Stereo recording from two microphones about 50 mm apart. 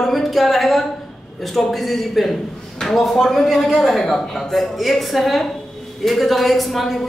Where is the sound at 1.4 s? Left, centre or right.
Centre.